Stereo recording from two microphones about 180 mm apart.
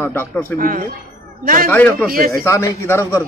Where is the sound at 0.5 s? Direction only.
50° right (ahead or behind).